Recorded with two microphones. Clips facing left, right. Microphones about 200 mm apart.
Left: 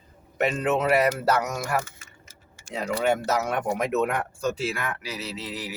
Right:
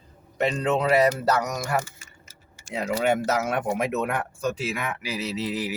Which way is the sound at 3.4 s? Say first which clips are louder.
Right 1 dB; 5° right (ahead or behind).